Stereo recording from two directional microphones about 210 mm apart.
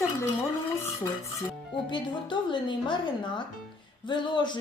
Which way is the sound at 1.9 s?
20° left (ahead or behind).